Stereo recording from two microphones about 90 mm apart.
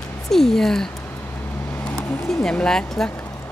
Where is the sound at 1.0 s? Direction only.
25° left (ahead or behind).